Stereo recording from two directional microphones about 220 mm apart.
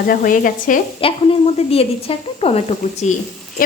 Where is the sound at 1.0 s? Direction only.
25° left (ahead or behind).